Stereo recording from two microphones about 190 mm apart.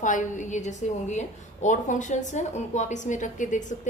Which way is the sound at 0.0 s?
40° left (ahead or behind).